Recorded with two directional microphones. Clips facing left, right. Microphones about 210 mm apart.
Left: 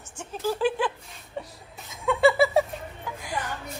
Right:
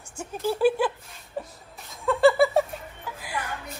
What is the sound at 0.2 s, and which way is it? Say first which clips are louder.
Speech: right 3 dB; 10° right (ahead or behind).